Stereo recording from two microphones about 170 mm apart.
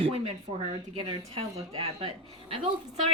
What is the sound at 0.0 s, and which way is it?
Speech, 35° right (ahead or behind).